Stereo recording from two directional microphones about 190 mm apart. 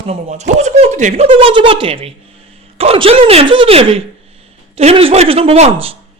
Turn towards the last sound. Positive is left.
turn(degrees=-30)  # may be behind; listen again after turning